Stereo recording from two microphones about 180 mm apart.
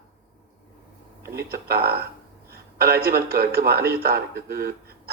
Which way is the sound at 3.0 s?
15° right (ahead or behind).